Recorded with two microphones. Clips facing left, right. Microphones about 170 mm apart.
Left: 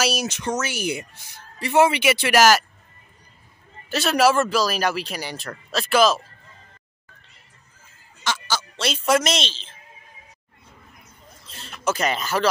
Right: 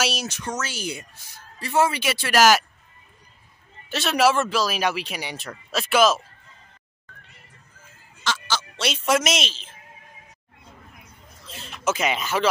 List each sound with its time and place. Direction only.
0.2 s speech: 20° left (ahead or behind)
3.9 s speech: centre (ahead or behind)
8.2 s fowl: 15° left (ahead or behind)
8.7 s speech: 5° right (ahead or behind)
11.8 s speech: 5° right (ahead or behind)